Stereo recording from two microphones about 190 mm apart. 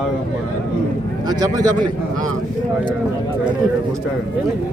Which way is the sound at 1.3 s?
20° right (ahead or behind).